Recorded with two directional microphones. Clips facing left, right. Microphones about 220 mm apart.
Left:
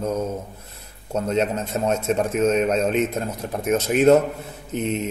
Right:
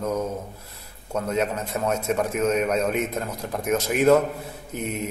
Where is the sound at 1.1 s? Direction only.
25° left (ahead or behind).